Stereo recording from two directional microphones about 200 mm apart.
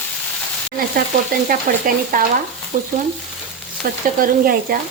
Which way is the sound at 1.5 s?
45° right (ahead or behind).